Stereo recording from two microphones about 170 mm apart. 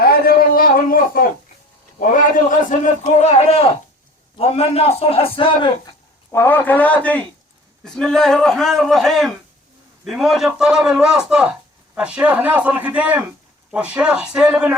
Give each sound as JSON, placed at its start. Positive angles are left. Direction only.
{"t": 0.0, "sound": "a sound", "side_deg": 60}
{"t": 2.0, "sound": "a man's voice", "side_deg": 50}
{"t": 6.3, "sound": "a man's voice", "side_deg": 15}